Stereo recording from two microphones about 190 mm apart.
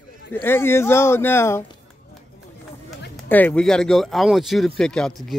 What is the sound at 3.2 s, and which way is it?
Speech, 10° left (ahead or behind).